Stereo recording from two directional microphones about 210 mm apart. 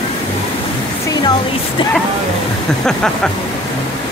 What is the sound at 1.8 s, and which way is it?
Speech, 25° left (ahead or behind).